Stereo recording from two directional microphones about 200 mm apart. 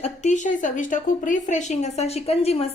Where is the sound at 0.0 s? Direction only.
35° left (ahead or behind).